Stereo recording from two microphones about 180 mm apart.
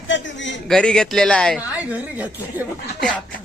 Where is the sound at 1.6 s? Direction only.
5° right (ahead or behind).